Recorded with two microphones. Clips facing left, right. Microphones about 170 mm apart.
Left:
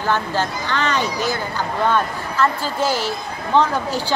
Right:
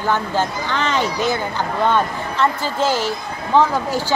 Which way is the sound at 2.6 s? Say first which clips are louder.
Right 1 dB; 15° left (ahead or behind).